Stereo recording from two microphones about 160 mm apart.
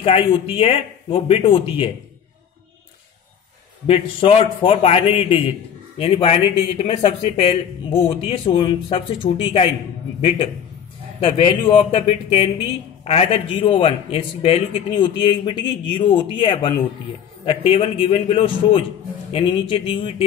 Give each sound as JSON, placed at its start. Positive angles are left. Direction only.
{"t": 0.0, "sound": "a man's voice", "side_deg": 35}
{"t": 3.8, "sound": "a man's voice", "side_deg": 35}
{"t": 11.1, "sound": "a man's voice", "side_deg": 35}